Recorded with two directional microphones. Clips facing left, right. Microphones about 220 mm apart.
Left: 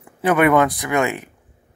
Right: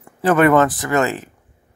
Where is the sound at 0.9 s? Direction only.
15° left (ahead or behind).